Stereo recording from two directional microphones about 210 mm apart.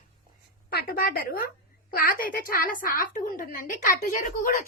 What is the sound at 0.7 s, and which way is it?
A woman's voice, 50° left (ahead or behind).